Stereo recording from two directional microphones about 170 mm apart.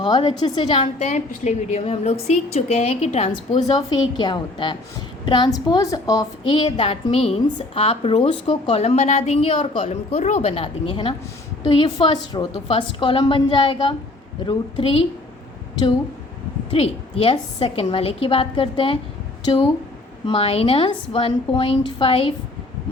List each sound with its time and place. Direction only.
0.0 s a woman's voice: 25° left (ahead or behind)
3.8 s a woman's voice: 25° left (ahead or behind)
12.5 s a woman's voice: 35° left (ahead or behind)
16.7 s a woman's voice: 35° left (ahead or behind)